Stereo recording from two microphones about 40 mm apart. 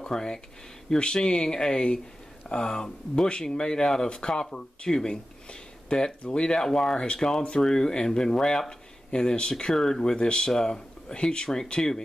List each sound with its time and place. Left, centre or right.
0.0 s speech: centre